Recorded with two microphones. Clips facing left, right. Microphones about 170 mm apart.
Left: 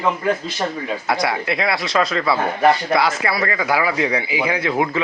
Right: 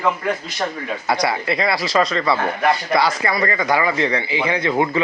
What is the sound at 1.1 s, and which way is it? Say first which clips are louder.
Speech: right 1 dB; centre (ahead or behind).